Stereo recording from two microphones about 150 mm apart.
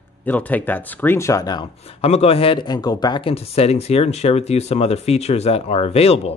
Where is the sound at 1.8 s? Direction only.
45° left (ahead or behind).